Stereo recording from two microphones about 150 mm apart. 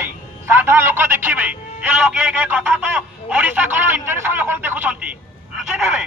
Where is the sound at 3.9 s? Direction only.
15° right (ahead or behind).